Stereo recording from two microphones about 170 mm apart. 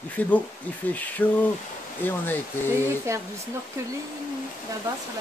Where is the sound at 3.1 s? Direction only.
15° right (ahead or behind).